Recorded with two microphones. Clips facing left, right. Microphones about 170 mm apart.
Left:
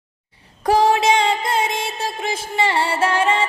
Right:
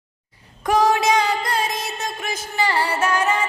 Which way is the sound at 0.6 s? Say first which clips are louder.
Left 2 dB; 30° left (ahead or behind).